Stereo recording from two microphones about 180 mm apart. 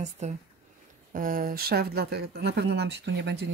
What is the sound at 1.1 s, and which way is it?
Speech, 50° right (ahead or behind).